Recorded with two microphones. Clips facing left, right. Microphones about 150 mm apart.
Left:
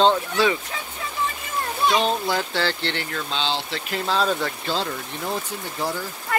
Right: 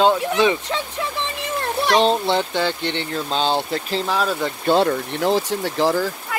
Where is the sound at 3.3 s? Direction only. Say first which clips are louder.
Right 7 dB; 50° right (ahead or behind).